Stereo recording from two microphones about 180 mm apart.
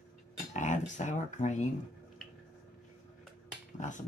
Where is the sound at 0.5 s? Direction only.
45° left (ahead or behind).